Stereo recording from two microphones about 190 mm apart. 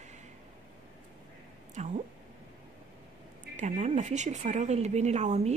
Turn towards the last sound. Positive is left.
turn(degrees=-35)  # may be behind; listen again after turning